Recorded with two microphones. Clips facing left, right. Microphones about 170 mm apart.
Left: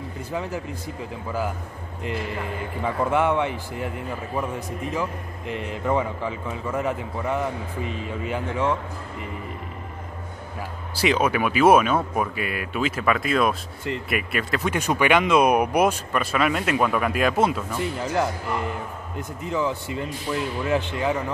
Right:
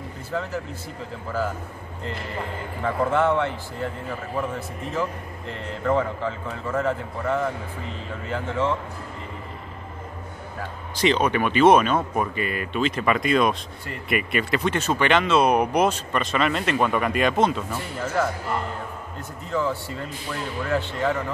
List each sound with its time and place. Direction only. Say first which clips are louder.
0.3 s speech: right 1 dB; 15° left (ahead or behind)
2.8 s speech: right 1 dB; 15° left (ahead or behind)
5.5 s speech: even; 15° left (ahead or behind)
10.6 s speech: right 2 dB; 10° left (ahead or behind)
17.9 s speech: right 2 dB; 20° left (ahead or behind)